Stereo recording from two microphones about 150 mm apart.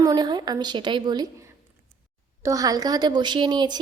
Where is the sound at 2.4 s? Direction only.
25° right (ahead or behind).